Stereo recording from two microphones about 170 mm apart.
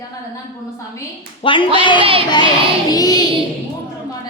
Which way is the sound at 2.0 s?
35° right (ahead or behind).